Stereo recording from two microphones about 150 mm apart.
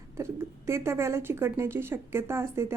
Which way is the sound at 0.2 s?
20° right (ahead or behind).